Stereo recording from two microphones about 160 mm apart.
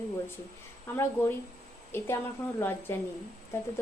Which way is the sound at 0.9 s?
15° left (ahead or behind).